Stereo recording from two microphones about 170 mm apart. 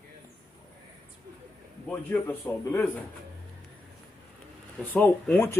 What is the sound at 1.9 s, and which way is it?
A man's voice, 5° left (ahead or behind).